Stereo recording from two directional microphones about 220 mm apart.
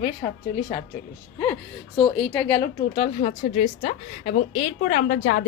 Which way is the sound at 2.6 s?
40° left (ahead or behind).